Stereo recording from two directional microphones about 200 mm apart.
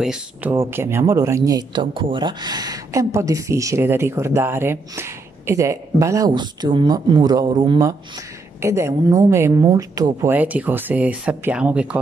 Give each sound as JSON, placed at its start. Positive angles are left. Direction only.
{"t": 0.0, "sound": "speech", "side_deg": -5}